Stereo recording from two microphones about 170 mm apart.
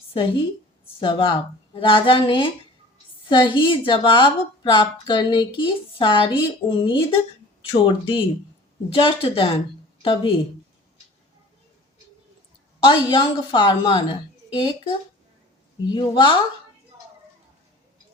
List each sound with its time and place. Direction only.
0.1 s a woman's voice: 30° left (ahead or behind)
12.8 s a woman's voice: 30° left (ahead or behind)
15.9 s a woman's voice: 30° left (ahead or behind)